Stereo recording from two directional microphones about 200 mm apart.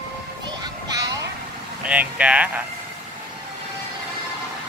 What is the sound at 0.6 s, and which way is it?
Music, 20° right (ahead or behind).